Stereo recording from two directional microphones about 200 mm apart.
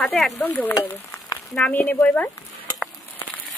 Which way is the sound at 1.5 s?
10° left (ahead or behind).